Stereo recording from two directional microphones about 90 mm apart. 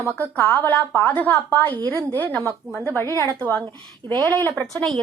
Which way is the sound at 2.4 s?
35° right (ahead or behind).